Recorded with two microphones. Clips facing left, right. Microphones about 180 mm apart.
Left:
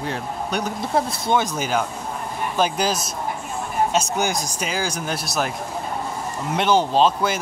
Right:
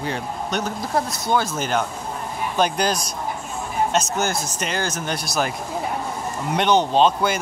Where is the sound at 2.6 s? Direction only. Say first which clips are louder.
Right 1 dB; 5° left (ahead or behind).